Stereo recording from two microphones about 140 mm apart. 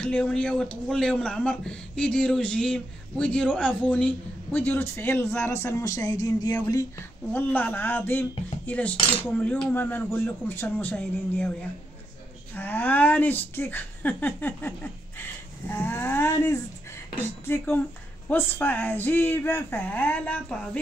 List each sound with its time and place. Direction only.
0.0 s cutlery: 10° left (ahead or behind); by 6.5 s 25° left (ahead or behind)
7.3 s cutlery: 10° left (ahead or behind)
12.5 s cutlery: 10° left (ahead or behind)